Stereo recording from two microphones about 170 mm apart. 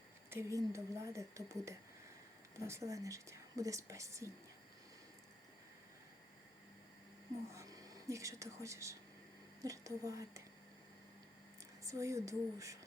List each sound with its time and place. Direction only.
0.3 s speech: 15° right (ahead or behind)
7.5 s a woman's voice: 20° right (ahead or behind)
11.8 s a woman's voice: 20° right (ahead or behind)